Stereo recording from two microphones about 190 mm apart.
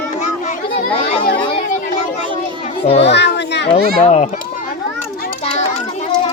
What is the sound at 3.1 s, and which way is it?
Children playing, 65° left (ahead or behind).